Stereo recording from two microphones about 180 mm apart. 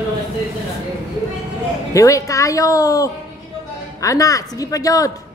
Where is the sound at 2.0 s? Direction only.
20° left (ahead or behind).